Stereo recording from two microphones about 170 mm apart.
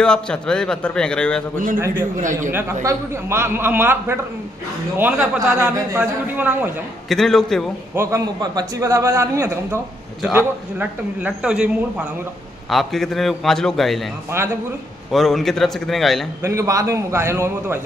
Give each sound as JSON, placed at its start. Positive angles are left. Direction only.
{"t": 0.0, "sound": "a man's voice", "side_deg": 5}
{"t": 2.1, "sound": "speech", "side_deg": -50}
{"t": 2.5, "sound": "a man's voice", "side_deg": -15}
{"t": 7.1, "sound": "a man's voice", "side_deg": 0}
{"t": 7.9, "sound": "a man's voice", "side_deg": -15}
{"t": 15.0, "sound": "a man's voice", "side_deg": 0}
{"t": 16.4, "sound": "a man's voice", "side_deg": -20}